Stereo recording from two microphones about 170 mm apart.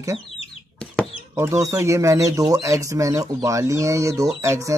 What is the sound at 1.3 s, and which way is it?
Speech, 15° right (ahead or behind).